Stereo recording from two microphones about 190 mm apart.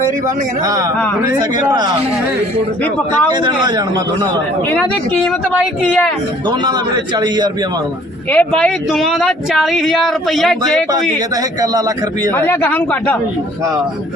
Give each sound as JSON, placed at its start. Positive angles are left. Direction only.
{"t": 1.4, "sound": "speech", "side_deg": -20}
{"t": 4.7, "sound": "speech", "side_deg": 5}
{"t": 7.2, "sound": "speech", "side_deg": -20}
{"t": 8.3, "sound": "speech", "side_deg": 5}
{"t": 12.3, "sound": "speech", "side_deg": 10}